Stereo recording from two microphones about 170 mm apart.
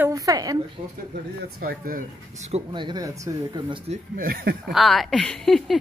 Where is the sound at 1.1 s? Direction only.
60° right (ahead or behind); by 2.6 s 40° right (ahead or behind).